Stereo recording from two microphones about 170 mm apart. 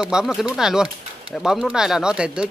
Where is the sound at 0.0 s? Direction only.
5° right (ahead or behind).